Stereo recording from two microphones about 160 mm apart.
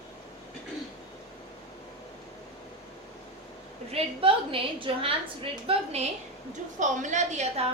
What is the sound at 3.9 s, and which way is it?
A woman's voice, 35° right (ahead or behind).